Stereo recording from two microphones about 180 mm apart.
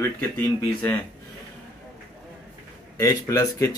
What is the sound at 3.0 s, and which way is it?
Speech, 20° left (ahead or behind).